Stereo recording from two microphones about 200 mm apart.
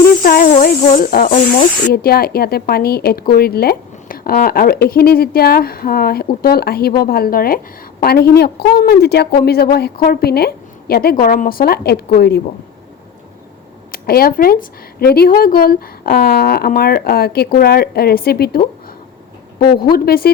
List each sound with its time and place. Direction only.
0.2 s snake: 50° left (ahead or behind)
1.9 s speech: 50° left (ahead or behind)
13.9 s speech: 50° left (ahead or behind)